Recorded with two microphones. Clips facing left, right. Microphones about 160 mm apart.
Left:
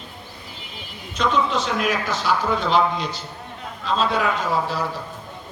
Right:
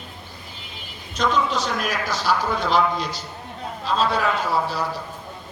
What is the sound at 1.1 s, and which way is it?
A man's voice, 40° right (ahead or behind).